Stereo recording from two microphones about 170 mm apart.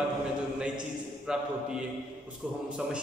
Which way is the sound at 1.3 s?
5° right (ahead or behind).